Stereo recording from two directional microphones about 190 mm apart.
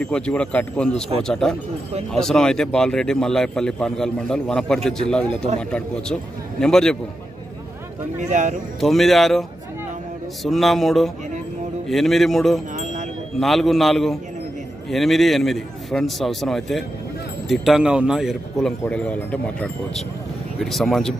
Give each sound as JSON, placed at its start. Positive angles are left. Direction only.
{"t": 0.0, "sound": "speech", "side_deg": 5}
{"t": 8.2, "sound": "speech", "side_deg": -40}
{"t": 8.8, "sound": "speech", "side_deg": 0}